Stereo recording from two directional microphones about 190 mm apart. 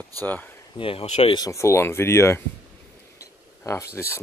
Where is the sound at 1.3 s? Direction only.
15° left (ahead or behind).